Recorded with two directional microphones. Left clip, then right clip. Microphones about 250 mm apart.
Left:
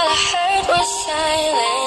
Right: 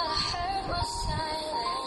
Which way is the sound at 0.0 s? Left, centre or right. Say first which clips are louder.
Left 13 dB; left.